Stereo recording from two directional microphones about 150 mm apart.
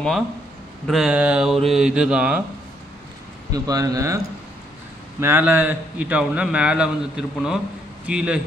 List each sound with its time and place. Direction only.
0.8 s a man's voice: 5° right (ahead or behind)
3.5 s speech: 25° right (ahead or behind)
5.2 s a man's voice: 15° right (ahead or behind)